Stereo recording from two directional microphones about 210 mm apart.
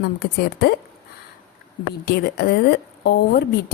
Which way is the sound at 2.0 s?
50° left (ahead or behind).